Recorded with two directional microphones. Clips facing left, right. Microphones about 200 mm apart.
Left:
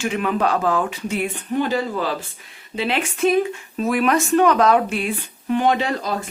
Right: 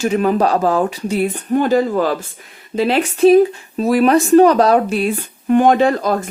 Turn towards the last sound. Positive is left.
turn(degrees=-50)  # may be behind; listen again after turning